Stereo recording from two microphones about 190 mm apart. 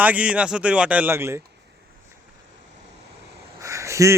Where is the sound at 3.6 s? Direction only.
15° right (ahead or behind).